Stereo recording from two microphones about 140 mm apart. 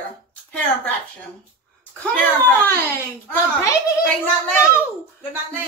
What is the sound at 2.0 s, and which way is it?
Speech, 10° left (ahead or behind).